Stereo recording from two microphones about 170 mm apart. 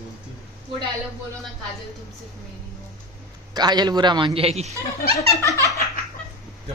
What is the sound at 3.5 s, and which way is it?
Speech, 25° right (ahead or behind).